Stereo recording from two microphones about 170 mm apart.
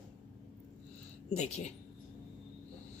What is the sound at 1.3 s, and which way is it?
Speech, 40° left (ahead or behind).